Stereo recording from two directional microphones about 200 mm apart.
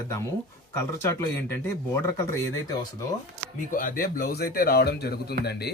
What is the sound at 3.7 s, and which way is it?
Speech, 45° left (ahead or behind).